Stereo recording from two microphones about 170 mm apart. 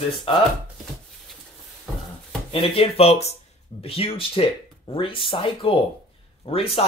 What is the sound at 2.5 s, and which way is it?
Speech, 30° left (ahead or behind).